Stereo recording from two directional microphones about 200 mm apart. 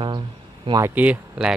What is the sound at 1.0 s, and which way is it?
Speech, 10° right (ahead or behind).